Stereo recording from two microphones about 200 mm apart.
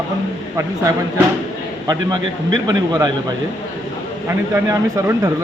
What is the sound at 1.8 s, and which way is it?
A man's voice, 20° right (ahead or behind).